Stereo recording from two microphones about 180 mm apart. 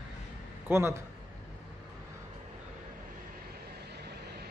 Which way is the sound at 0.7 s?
15° right (ahead or behind).